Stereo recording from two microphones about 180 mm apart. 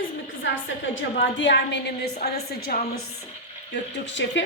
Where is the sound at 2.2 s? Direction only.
60° left (ahead or behind).